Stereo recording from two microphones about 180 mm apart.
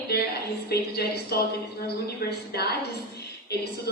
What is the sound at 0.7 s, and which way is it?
A woman's voice, 60° left (ahead or behind).